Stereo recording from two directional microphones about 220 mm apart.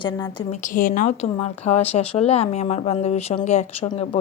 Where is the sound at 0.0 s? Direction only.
20° left (ahead or behind).